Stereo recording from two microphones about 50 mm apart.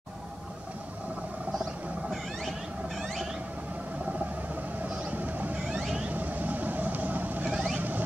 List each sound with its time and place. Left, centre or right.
4.8 s vehicle: right
7.5 s vehicle: right